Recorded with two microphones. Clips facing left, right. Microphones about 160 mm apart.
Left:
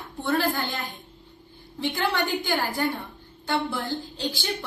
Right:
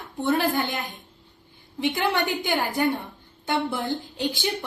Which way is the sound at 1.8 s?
20° right (ahead or behind).